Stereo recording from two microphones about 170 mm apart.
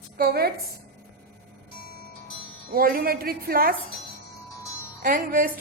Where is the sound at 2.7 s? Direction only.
60° right (ahead or behind).